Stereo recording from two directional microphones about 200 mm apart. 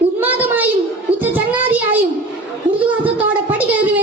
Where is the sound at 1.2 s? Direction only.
10° right (ahead or behind).